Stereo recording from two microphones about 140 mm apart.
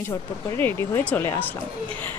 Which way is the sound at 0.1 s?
15° left (ahead or behind).